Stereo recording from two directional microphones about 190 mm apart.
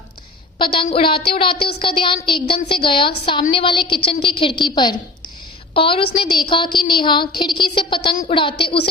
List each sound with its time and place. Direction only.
0.6 s a woman's voice: 25° left (ahead or behind)